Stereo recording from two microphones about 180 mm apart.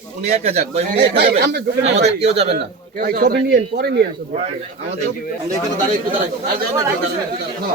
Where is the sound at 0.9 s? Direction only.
65° right (ahead or behind).